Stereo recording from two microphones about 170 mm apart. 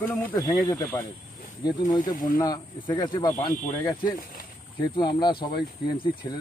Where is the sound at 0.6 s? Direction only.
20° left (ahead or behind).